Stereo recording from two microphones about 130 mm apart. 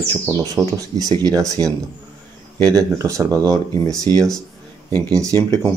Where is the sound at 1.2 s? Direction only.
25° right (ahead or behind).